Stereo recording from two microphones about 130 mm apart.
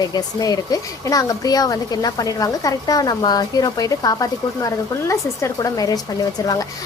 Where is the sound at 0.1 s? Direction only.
30° left (ahead or behind).